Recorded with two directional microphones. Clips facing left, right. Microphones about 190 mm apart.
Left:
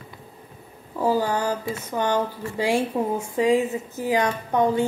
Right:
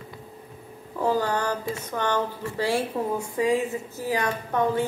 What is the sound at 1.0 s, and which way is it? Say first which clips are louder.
A woman's voice: left 2 dB; 10° left (ahead or behind).